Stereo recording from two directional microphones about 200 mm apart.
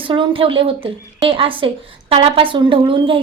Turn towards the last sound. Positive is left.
turn(degrees=-25)  # may be behind; listen again after turning